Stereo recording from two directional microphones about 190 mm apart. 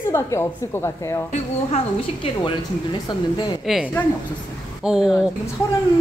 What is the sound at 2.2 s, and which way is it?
Speech, 25° left (ahead or behind).